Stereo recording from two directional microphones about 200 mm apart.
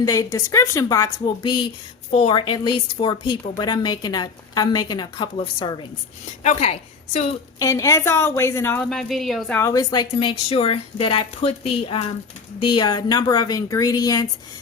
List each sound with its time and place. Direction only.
0.0 s a woman's voice: 15° left (ahead or behind); by 7.3 s 35° left (ahead or behind)
7.6 s a woman's voice: 15° left (ahead or behind)
9.6 s a woman's voice: 15° left (ahead or behind)